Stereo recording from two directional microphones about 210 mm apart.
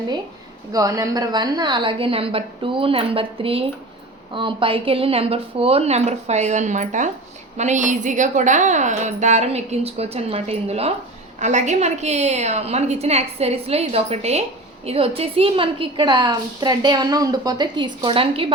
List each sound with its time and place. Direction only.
0.7 s a woman's voice: 15° right (ahead or behind)